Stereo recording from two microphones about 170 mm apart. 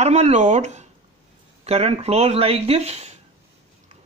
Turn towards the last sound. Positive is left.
turn(degrees=-40)  # may be behind; listen again after turning